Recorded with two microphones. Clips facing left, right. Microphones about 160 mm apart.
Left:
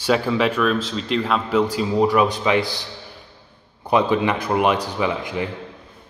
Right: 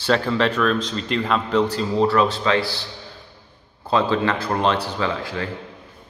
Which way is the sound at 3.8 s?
15° left (ahead or behind).